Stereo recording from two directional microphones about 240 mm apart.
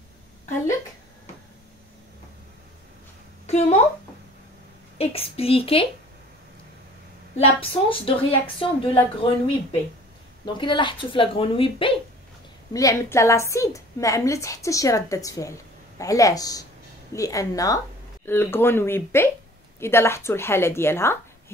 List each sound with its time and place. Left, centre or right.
3.4 s a child's voice: left
4.9 s speech: left
7.9 s a woman's voice: left